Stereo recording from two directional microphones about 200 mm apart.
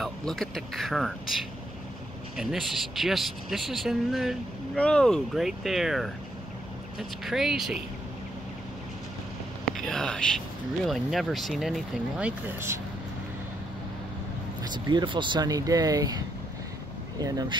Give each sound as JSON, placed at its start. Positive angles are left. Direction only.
{"t": 0.0, "sound": "speech", "side_deg": 0}
{"t": 7.2, "sound": "speech", "side_deg": 0}
{"t": 9.8, "sound": "speech", "side_deg": 0}
{"t": 14.6, "sound": "speech", "side_deg": -20}
{"t": 17.2, "sound": "speech", "side_deg": -20}